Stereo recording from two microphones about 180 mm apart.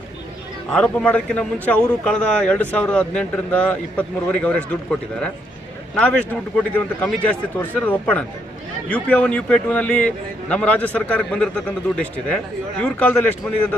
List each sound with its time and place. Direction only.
0.7 s a man's voice: 5° left (ahead or behind)